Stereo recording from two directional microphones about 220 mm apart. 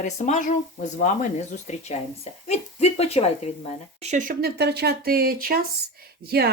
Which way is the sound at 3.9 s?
30° right (ahead or behind).